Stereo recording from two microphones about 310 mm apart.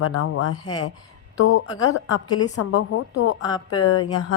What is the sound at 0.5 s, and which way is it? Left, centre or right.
Speech, centre.